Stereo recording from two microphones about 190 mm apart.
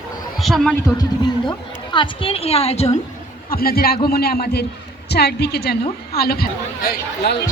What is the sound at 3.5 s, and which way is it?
A man's voice, 50° left (ahead or behind).